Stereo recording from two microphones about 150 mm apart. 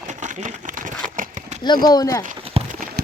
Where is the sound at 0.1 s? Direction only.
50° right (ahead or behind).